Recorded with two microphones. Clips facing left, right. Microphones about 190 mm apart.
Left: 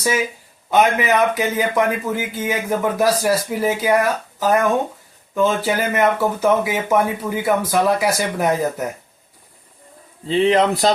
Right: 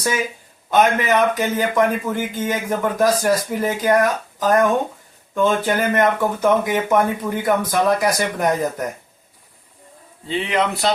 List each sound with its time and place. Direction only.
0.7 s speech: 10° left (ahead or behind)
10.2 s speech: 35° left (ahead or behind)